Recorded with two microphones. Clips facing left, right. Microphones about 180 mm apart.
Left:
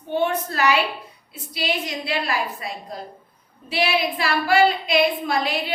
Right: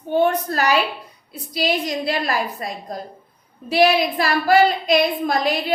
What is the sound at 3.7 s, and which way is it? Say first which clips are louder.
A woman's voice: right 6 dB; 40° right (ahead or behind).